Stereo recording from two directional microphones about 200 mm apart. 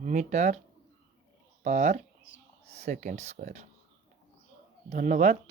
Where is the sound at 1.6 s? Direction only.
40° right (ahead or behind).